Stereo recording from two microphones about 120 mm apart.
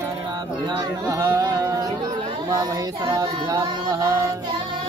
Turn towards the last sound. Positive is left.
turn(degrees=-30)  # may be behind; listen again after turning